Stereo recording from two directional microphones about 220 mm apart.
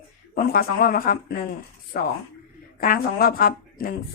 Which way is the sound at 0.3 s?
40° left (ahead or behind).